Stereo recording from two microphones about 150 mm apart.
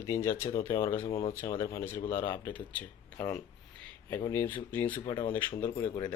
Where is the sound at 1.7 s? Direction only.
15° left (ahead or behind).